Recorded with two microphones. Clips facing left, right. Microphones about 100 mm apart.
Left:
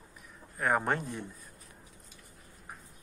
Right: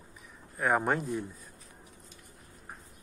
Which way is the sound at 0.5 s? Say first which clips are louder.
Right 2 dB; 5° right (ahead or behind).